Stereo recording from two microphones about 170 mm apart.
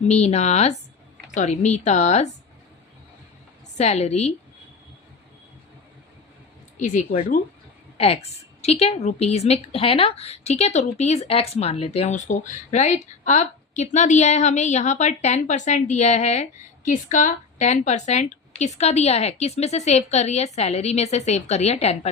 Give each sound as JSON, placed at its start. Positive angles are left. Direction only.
{"t": 0.1, "sound": "a woman's voice", "side_deg": 40}
{"t": 3.8, "sound": "speech", "side_deg": 40}
{"t": 6.7, "sound": "a woman's voice", "side_deg": 45}
{"t": 7.9, "sound": "speech", "side_deg": 35}